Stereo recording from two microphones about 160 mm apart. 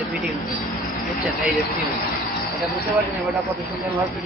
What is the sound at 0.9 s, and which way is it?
Vehicle, centre (ahead or behind).